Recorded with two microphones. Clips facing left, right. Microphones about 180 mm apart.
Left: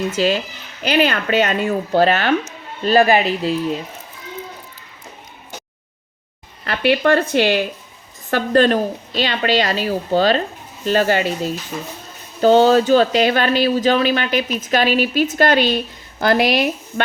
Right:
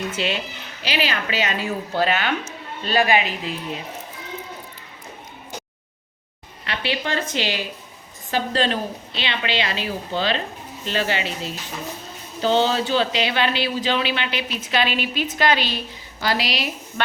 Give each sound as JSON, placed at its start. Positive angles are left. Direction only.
{"t": 0.8, "sound": "speech", "side_deg": 50}
{"t": 6.7, "sound": "speech", "side_deg": 55}